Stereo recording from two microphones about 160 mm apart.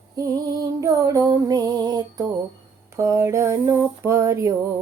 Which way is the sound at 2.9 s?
20° right (ahead or behind).